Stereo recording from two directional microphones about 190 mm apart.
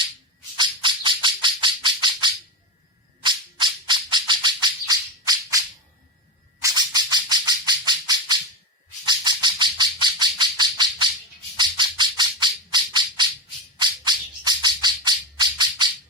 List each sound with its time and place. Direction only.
0.5 s bird: 25° right (ahead or behind)
6.6 s bird: 20° right (ahead or behind)
11.5 s squawk: 25° right (ahead or behind)
13.7 s music: 25° right (ahead or behind)